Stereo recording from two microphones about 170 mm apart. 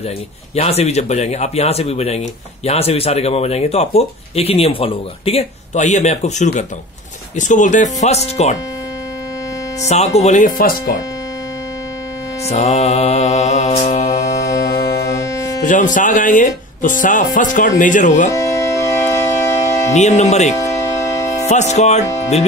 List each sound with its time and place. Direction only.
0.6 s speech: 35° left (ahead or behind)
9.8 s speech: 40° left (ahead or behind)
12.4 s speech: 40° left (ahead or behind)
15.6 s speech: 50° left (ahead or behind)
18.3 s organ: 20° left (ahead or behind)
19.9 s speech: 40° left (ahead or behind)